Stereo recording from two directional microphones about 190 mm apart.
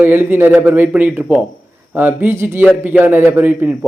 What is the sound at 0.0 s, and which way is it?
Speech, 10° right (ahead or behind).